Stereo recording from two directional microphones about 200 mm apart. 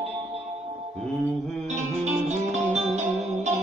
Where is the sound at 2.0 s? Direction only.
35° right (ahead or behind).